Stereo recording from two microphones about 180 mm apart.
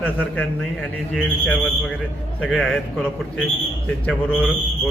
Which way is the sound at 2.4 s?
5° left (ahead or behind).